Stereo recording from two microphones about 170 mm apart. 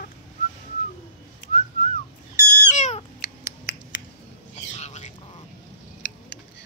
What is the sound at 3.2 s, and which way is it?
Finger snapping, 80° left.